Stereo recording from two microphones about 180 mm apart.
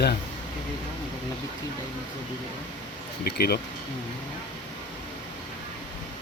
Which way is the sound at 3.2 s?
60° left (ahead or behind).